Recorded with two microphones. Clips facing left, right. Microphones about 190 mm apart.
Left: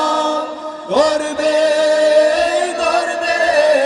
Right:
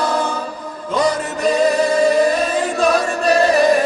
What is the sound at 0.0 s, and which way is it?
Chant, 90° left.